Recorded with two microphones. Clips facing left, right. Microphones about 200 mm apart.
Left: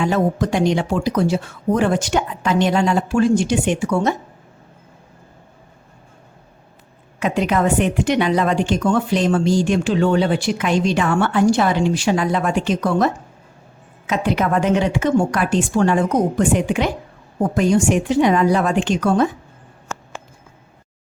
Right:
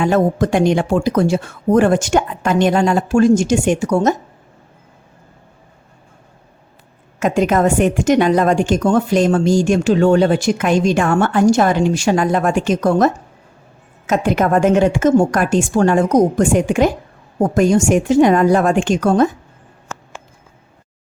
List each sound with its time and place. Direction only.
0.0 s a woman's voice: 50° right (ahead or behind)
7.2 s a woman's voice: 45° right (ahead or behind)
14.1 s a woman's voice: 45° right (ahead or behind)